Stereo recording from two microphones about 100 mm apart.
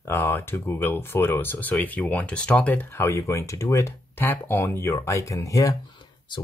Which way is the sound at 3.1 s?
30° left (ahead or behind).